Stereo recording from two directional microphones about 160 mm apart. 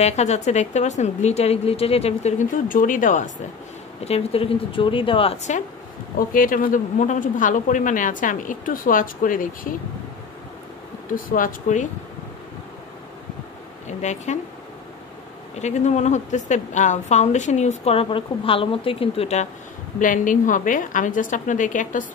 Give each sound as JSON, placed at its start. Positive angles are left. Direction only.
{"t": 0.0, "sound": "a woman's voice", "side_deg": 45}
{"t": 4.0, "sound": "a woman's voice", "side_deg": 40}
{"t": 6.1, "sound": "speech", "side_deg": 60}
{"t": 11.1, "sound": "speech", "side_deg": 60}
{"t": 13.8, "sound": "a woman's voice", "side_deg": 45}
{"t": 15.6, "sound": "a woman's voice", "side_deg": 45}
{"t": 20.0, "sound": "speech", "side_deg": 55}